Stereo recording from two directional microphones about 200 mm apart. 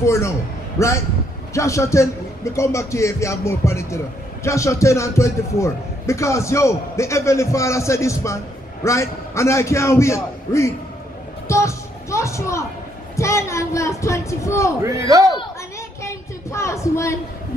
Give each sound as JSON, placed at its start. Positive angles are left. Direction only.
{"t": 0.0, "sound": "speech", "side_deg": 15}
{"t": 11.4, "sound": "music", "side_deg": 15}
{"t": 13.1, "sound": "speech", "side_deg": 15}
{"t": 14.8, "sound": "a man's voice", "side_deg": -15}
{"t": 16.0, "sound": "a sound", "side_deg": 15}